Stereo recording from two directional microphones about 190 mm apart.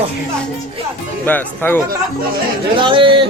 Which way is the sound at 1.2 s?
10° left (ahead or behind).